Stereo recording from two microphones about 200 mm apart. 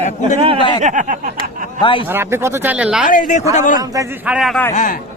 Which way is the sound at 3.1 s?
40° left (ahead or behind).